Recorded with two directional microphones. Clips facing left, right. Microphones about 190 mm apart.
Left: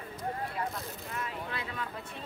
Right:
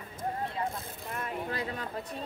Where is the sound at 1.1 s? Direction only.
45° right (ahead or behind).